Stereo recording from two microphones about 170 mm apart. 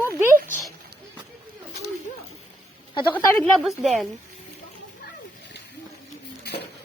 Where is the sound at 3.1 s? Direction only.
15° left (ahead or behind).